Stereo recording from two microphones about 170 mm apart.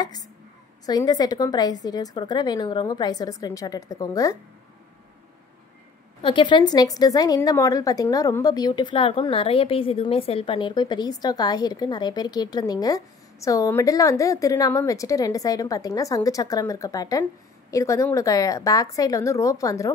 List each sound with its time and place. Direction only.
0.8 s a woman's voice: 20° left (ahead or behind)
6.2 s a woman's voice: 30° left (ahead or behind)